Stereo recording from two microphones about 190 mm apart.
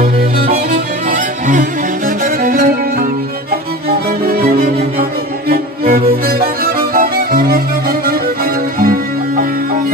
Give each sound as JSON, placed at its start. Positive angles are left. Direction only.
{"t": 2.4, "sound": "music", "side_deg": -45}
{"t": 4.3, "sound": "music", "side_deg": -50}